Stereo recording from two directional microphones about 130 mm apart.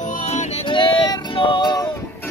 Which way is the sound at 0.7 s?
40° left (ahead or behind).